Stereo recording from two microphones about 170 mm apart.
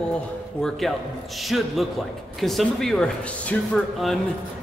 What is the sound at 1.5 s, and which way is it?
Speech, centre (ahead or behind).